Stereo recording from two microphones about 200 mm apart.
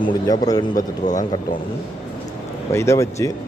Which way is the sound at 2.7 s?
15° left (ahead or behind).